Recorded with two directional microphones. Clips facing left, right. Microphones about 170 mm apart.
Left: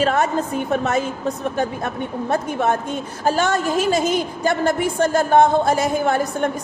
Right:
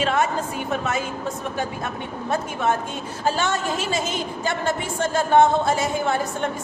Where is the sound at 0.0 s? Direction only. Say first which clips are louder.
Left 3 dB; 40° left (ahead or behind).